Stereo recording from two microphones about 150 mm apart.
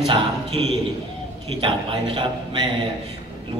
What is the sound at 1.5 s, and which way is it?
A man's voice, 35° right (ahead or behind).